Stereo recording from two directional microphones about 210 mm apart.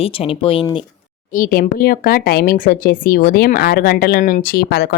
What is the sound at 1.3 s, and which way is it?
Speech, 40° left (ahead or behind).